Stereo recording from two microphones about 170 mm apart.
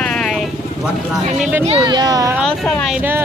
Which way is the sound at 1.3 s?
5° right (ahead or behind).